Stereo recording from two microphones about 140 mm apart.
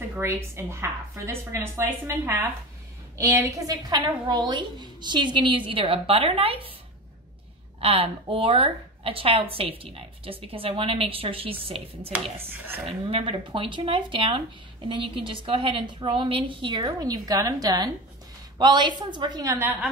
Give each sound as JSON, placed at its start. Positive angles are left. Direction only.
{"t": 0.1, "sound": "a woman's voice", "side_deg": -15}
{"t": 7.8, "sound": "a woman's voice", "side_deg": -40}
{"t": 12.1, "sound": "a woman's voice", "side_deg": -10}
{"t": 12.8, "sound": "a woman's voice", "side_deg": -45}
{"t": 19.6, "sound": "a woman's voice", "side_deg": -10}